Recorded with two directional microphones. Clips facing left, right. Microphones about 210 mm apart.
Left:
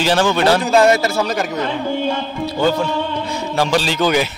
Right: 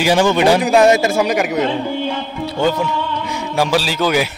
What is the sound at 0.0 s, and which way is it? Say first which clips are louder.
A man's voice: right 2 dB; 10° right (ahead or behind).